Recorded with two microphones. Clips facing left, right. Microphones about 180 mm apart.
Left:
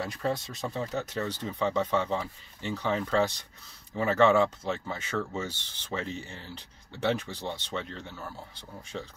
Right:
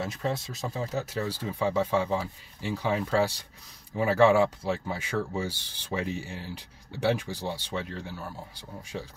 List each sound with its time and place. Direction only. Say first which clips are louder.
0.0 s speech: even; centre (ahead or behind)